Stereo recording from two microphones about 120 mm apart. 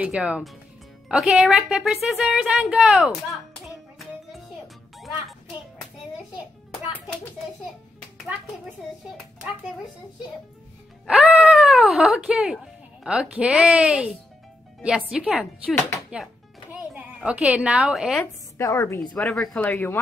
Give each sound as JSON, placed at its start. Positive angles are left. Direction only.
{"t": 0.0, "sound": "a woman's voice", "side_deg": -10}
{"t": 3.6, "sound": "music", "side_deg": 0}
{"t": 11.1, "sound": "a woman's voice", "side_deg": -5}
{"t": 18.2, "sound": "a woman's voice", "side_deg": 25}
{"t": 19.1, "sound": "a woman's voice", "side_deg": 5}
{"t": 19.7, "sound": "speech", "side_deg": 20}